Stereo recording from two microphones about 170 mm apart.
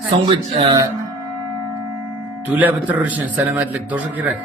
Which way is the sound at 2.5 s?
10° right (ahead or behind).